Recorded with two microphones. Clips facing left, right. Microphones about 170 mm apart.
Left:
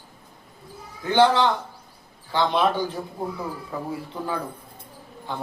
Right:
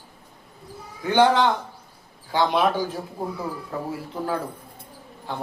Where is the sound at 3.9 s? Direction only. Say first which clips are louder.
Right 2 dB; 5° right (ahead or behind).